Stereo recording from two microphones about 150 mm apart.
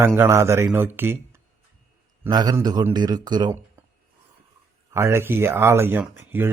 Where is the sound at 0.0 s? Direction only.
15° right (ahead or behind).